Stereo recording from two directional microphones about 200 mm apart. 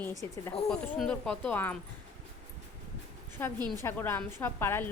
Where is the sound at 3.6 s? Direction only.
20° right (ahead or behind).